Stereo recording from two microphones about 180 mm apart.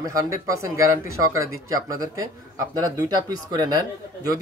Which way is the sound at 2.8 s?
20° right (ahead or behind).